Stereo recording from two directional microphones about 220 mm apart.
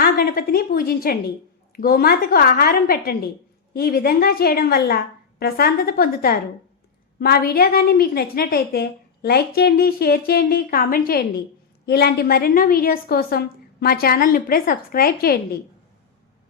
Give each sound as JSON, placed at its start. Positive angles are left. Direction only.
{"t": 0.0, "sound": "a woman's voice", "side_deg": 45}